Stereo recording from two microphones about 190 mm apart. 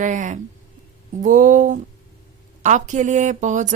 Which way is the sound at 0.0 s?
40° right (ahead or behind).